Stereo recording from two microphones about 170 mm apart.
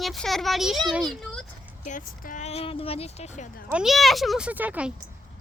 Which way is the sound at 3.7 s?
Centre (ahead or behind).